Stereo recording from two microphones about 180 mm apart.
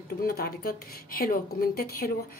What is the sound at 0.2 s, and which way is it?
A woman's voice, 55° left (ahead or behind).